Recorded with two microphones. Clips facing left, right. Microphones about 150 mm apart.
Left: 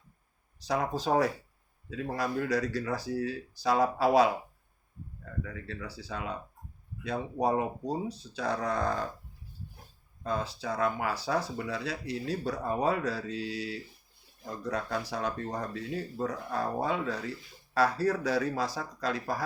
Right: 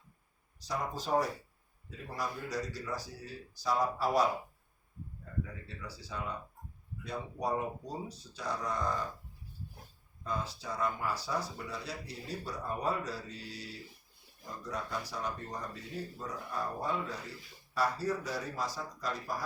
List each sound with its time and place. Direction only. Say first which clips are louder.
1.0 s speech: left 2 dB; 70° left (ahead or behind)
10.2 s speech: left 5 dB; 75° left (ahead or behind)
17.7 s speech: left 6 dB; 65° left (ahead or behind)